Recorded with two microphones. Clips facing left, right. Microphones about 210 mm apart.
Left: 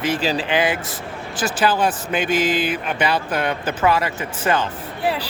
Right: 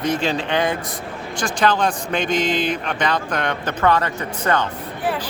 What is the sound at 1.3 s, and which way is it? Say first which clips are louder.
Speech: even; 5° left (ahead or behind).